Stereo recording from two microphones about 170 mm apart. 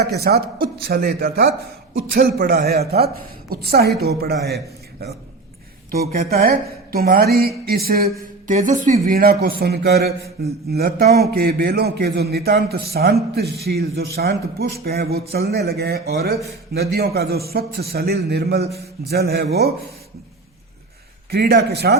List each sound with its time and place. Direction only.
0.0 s a man's voice: 70° right (ahead or behind)
5.9 s a man's voice: 60° right (ahead or behind)
8.4 s a man's voice: 50° right (ahead or behind); by 19.7 s 70° right (ahead or behind)
21.2 s a man's voice: 70° right (ahead or behind)